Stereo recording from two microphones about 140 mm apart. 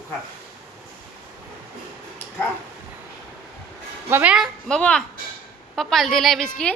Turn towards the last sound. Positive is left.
turn(degrees=5)  # may be behind; listen again after turning